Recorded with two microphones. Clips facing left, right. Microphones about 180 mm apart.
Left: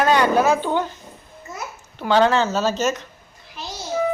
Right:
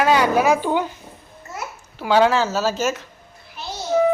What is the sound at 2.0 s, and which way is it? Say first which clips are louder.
A woman's voice: even; 10° right (ahead or behind).